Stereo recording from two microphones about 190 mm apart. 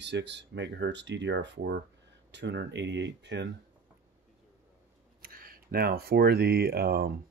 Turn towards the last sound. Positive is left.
turn(degrees=-55)  # may be behind; listen again after turning